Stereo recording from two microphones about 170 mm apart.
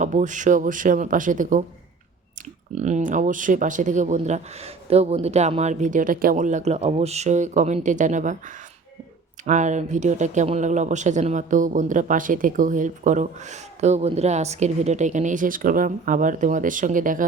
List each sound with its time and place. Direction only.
0.0 s speech: 45° right (ahead or behind)
2.7 s speech: 40° right (ahead or behind)
9.5 s speech: 45° right (ahead or behind)